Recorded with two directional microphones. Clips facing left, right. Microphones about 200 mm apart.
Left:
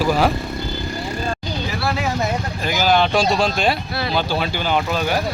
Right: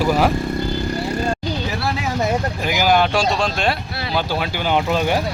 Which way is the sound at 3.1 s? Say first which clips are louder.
Left 2 dB; 5° left (ahead or behind).